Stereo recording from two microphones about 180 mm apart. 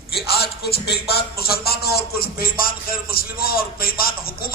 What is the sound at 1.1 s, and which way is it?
A man's voice, 60° left (ahead or behind).